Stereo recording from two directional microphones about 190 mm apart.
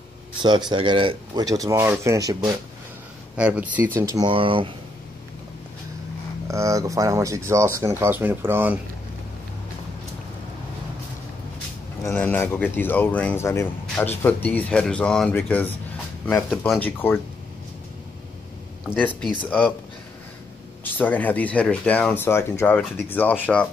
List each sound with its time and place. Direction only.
0.4 s speech: 20° right (ahead or behind)
3.3 s speech: 5° right (ahead or behind)
4.1 s speech: 25° right (ahead or behind)
6.4 s speech: 15° right (ahead or behind)
12.0 s speech: 10° left (ahead or behind)
18.9 s speech: 10° left (ahead or behind)
20.8 s speech: 10° left (ahead or behind)